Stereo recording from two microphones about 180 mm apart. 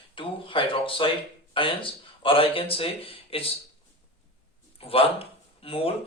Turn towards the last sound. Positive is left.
turn(degrees=30)  # may be behind; listen again after turning